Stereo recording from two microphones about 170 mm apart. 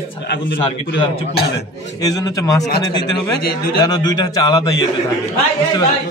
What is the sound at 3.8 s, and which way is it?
A man's voice, 25° left (ahead or behind).